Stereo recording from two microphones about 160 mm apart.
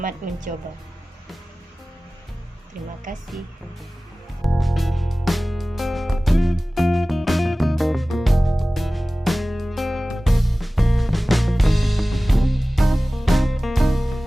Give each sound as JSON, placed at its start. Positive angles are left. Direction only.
{"t": 0.0, "sound": "speech", "side_deg": -55}
{"t": 3.1, "sound": "speech", "side_deg": -55}
{"t": 4.4, "sound": "music", "side_deg": 0}